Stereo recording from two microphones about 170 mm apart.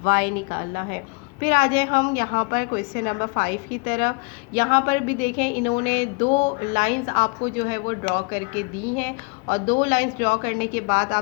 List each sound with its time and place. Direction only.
0.0 s a woman's voice: 60° left (ahead or behind)